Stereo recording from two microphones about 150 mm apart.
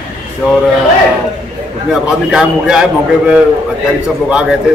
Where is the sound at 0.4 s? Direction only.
5° right (ahead or behind).